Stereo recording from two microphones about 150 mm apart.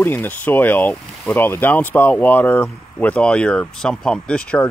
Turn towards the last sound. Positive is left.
turn(degrees=10)  # may be behind; listen again after turning